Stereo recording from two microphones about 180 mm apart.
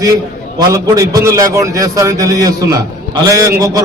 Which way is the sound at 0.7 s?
20° right (ahead or behind).